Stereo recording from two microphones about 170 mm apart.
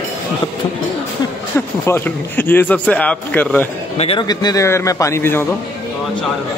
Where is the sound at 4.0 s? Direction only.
35° left (ahead or behind).